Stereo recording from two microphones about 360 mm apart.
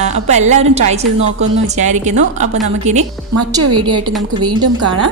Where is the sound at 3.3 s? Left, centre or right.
Right.